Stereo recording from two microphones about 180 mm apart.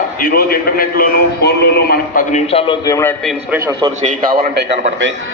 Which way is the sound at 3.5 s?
20° right (ahead or behind).